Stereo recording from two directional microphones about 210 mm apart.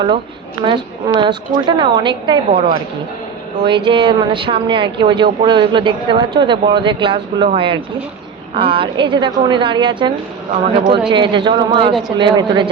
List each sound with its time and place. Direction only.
0.6 s speech: 25° right (ahead or behind)
11.1 s speech: 25° right (ahead or behind)